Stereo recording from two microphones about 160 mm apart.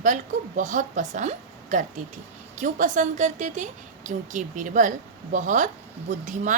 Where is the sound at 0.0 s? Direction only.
50° right (ahead or behind).